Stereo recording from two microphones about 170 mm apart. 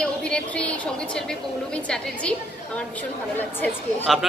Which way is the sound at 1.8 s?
5° left (ahead or behind).